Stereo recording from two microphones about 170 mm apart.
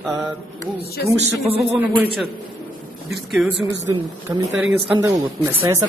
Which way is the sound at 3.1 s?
Centre (ahead or behind).